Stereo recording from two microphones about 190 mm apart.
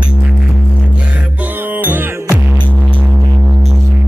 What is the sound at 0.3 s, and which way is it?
Music, 5° left (ahead or behind).